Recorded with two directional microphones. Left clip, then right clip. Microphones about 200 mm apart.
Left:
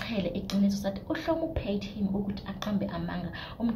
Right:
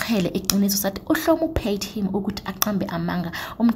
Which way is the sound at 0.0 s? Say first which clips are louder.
Right 9 dB; 40° right (ahead or behind).